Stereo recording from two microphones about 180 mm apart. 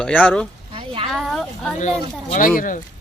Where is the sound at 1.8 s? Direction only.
40° left (ahead or behind).